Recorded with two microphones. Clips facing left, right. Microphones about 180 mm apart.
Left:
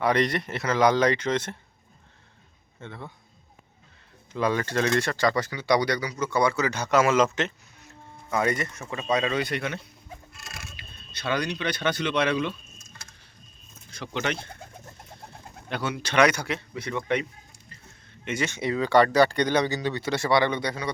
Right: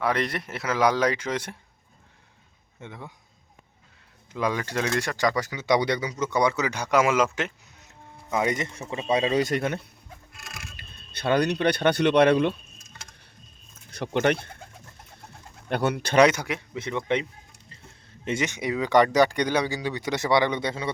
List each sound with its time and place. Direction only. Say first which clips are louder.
0.0 s speech: left 3 dB; 5° right (ahead or behind)
2.8 s speech: left 1 dB; 15° right (ahead or behind)
4.3 s speech: left 2 dB; 15° right (ahead or behind); by 9.4 s 30° right (ahead or behind)
9.4 s speech: right 4 dB; 45° right (ahead or behind)
11.2 s speech: right 6 dB; 55° right (ahead or behind)
14.0 s speech: right 7 dB; 55° right (ahead or behind)
15.7 s speech: right 5 dB; 55° right (ahead or behind)
16.3 s speech: even; 15° right (ahead or behind)
18.3 s speech: right 1 dB; 20° right (ahead or behind)